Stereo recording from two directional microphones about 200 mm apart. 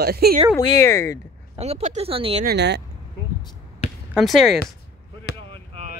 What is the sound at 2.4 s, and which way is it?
Speech, 55° right (ahead or behind).